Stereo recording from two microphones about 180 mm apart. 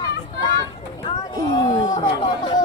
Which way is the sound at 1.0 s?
25° left (ahead or behind).